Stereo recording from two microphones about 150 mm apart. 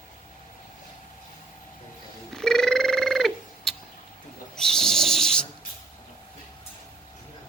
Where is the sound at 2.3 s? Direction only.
5° left (ahead or behind).